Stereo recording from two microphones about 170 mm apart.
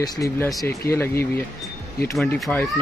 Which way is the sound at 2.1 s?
Centre (ahead or behind).